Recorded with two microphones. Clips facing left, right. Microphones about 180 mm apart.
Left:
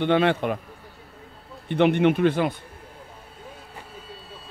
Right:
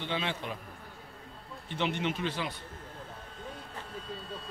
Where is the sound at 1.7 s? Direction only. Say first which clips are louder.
Left 13 dB; 60° left (ahead or behind).